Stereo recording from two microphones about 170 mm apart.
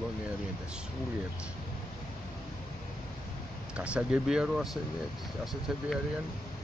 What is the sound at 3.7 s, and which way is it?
Speech, 5° right (ahead or behind).